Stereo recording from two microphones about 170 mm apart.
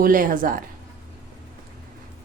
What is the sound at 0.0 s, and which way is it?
Speech, 55° right (ahead or behind).